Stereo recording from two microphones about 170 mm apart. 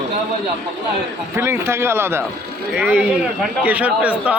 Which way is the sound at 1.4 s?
15° right (ahead or behind).